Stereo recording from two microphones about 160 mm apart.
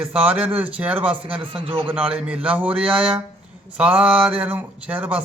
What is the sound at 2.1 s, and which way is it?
Speech, 10° right (ahead or behind).